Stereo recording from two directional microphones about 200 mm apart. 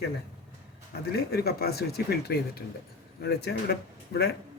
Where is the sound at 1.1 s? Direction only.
50° left (ahead or behind).